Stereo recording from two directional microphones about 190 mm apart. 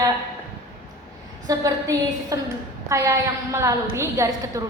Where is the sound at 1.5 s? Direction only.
15° right (ahead or behind).